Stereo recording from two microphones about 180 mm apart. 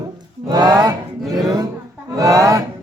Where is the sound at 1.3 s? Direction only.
20° right (ahead or behind).